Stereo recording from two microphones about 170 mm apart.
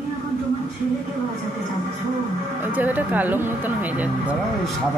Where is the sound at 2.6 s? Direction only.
10° right (ahead or behind).